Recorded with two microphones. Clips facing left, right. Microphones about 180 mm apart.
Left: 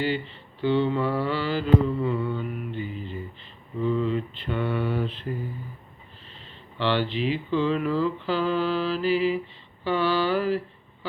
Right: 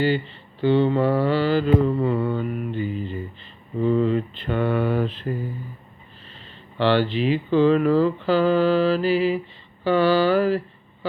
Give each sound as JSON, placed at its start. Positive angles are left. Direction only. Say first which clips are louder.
{"t": 0.7, "sound": "mantra", "louder": "right 5 dB", "side_deg": -35}
{"t": 1.5, "sound": "mantra", "louder": "right 3 dB", "side_deg": -50}
{"t": 6.7, "sound": "speech", "louder": "right 6 dB", "side_deg": -40}
{"t": 7.1, "sound": "speech", "louder": "right 5 dB", "side_deg": -5}
{"t": 7.5, "sound": "mantra", "louder": "right 8 dB", "side_deg": -45}
{"t": 9.0, "sound": "speech", "louder": "right 3 dB", "side_deg": -5}
{"t": 9.8, "sound": "mantra", "louder": "right 6 dB", "side_deg": -45}